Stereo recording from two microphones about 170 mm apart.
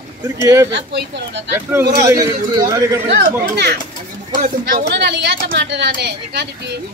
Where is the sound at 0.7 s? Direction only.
90° right.